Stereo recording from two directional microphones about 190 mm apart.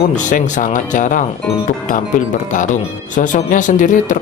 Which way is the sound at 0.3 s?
40° left (ahead or behind).